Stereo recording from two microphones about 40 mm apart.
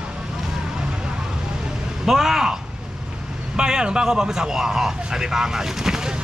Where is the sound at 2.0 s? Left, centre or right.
Centre.